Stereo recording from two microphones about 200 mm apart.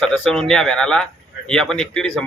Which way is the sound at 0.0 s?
Centre (ahead or behind).